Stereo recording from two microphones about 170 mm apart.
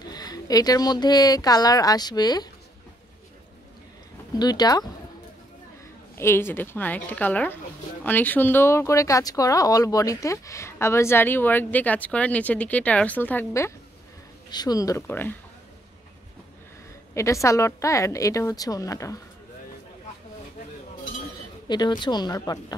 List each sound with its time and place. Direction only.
0.0 s speech: 25° left (ahead or behind)
4.4 s speech: 25° left (ahead or behind)
6.1 s speech: 15° left (ahead or behind)
17.1 s speech: 15° left (ahead or behind)
21.6 s speech: 25° left (ahead or behind)